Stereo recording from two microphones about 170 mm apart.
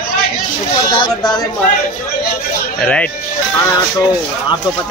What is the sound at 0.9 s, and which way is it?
Speech, 25° left (ahead or behind).